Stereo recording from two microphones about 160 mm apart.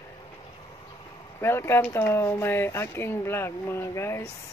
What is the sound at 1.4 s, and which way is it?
Speech, 15° left (ahead or behind).